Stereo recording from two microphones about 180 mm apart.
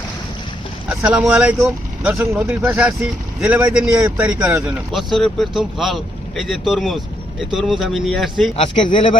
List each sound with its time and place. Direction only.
0.9 s speech: 5° right (ahead or behind)
8.5 s speech: 30° left (ahead or behind)